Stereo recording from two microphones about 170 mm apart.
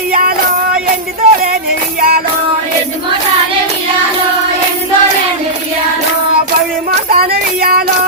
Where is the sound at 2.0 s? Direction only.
60° right (ahead or behind).